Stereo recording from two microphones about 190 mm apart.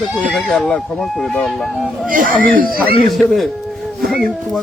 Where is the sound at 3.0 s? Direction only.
Centre (ahead or behind).